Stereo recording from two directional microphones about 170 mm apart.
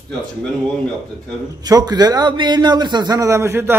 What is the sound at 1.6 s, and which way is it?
A man's voice, 25° right (ahead or behind).